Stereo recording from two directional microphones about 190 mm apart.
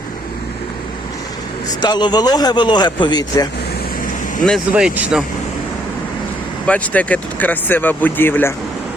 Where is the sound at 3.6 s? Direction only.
55° left (ahead or behind).